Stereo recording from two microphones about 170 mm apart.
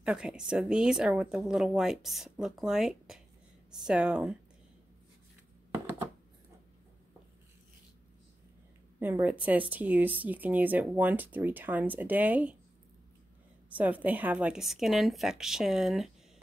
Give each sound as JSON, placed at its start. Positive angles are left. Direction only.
{"t": 0.0, "sound": "speech", "side_deg": -5}
{"t": 9.0, "sound": "speech", "side_deg": -10}
{"t": 13.7, "sound": "speech", "side_deg": -10}